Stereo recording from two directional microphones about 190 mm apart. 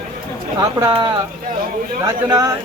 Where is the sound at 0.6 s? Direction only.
20° right (ahead or behind).